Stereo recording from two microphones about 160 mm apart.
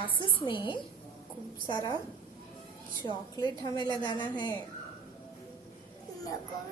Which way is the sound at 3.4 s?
25° left (ahead or behind).